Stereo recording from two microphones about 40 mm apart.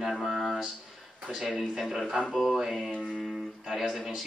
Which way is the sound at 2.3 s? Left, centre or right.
Centre.